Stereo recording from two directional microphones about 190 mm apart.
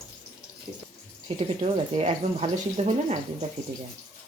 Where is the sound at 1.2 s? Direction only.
30° right (ahead or behind).